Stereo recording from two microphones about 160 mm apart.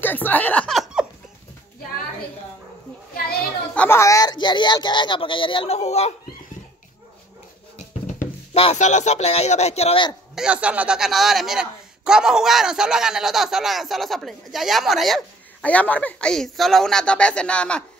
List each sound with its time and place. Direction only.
0.0 s snicker: 10° left (ahead or behind)
3.7 s speech: 10° left (ahead or behind); by 6.1 s 45° left (ahead or behind)
8.5 s speech: 40° left (ahead or behind)
10.3 s a woman's voice: 5° right (ahead or behind)